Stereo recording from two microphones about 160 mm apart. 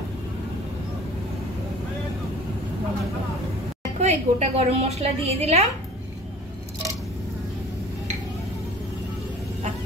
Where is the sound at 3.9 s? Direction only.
40° right (ahead or behind).